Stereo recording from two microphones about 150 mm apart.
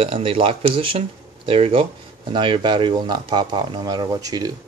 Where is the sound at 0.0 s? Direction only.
35° right (ahead or behind).